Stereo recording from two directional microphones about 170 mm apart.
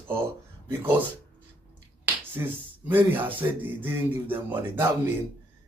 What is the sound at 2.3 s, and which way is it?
Speech, 10° right (ahead or behind).